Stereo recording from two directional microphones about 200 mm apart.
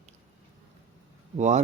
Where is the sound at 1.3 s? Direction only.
35° right (ahead or behind).